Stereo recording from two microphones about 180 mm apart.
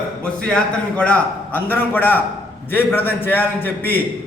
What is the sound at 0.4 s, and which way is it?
A man's voice, 5° left (ahead or behind).